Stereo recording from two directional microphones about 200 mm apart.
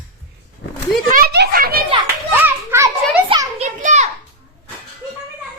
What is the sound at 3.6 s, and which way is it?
Children playing, 35° right (ahead or behind).